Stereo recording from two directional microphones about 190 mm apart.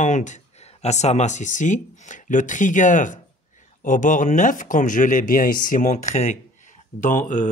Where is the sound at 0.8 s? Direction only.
35° left (ahead or behind).